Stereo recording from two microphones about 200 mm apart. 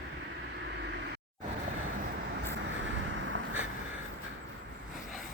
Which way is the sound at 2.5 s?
65° right (ahead or behind).